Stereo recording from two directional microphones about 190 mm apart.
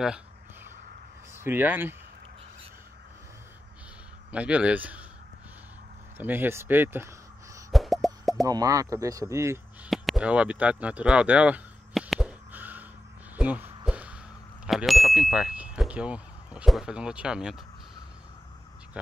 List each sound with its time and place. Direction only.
1.3 s speech: 10° right (ahead or behind)
4.3 s speech: 5° right (ahead or behind)
6.1 s speech: 10° right (ahead or behind)
7.7 s a sound: centre (ahead or behind)
8.5 s speech: 20° right (ahead or behind)
9.8 s a sound: centre (ahead or behind)
14.7 s speech: centre (ahead or behind)